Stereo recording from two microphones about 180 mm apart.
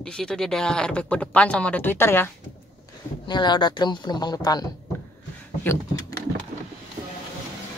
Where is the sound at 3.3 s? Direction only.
25° left (ahead or behind).